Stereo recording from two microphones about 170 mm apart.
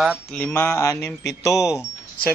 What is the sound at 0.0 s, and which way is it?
Speech, 5° right (ahead or behind).